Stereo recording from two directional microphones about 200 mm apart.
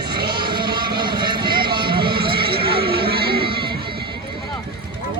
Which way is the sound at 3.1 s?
50° right (ahead or behind).